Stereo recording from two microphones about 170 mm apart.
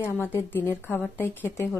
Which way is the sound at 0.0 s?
10° left (ahead or behind).